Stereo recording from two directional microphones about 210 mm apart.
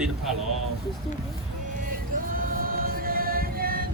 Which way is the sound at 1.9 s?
40° right (ahead or behind).